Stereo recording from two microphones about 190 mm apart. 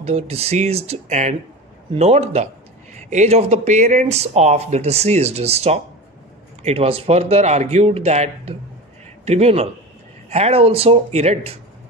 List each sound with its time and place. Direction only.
0.0 s speech: 35° right (ahead or behind)